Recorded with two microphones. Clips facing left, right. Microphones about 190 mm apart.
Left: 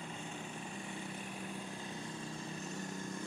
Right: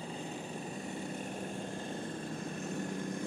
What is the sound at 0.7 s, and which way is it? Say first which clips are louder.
Vehicle: right 5 dB; 40° right (ahead or behind).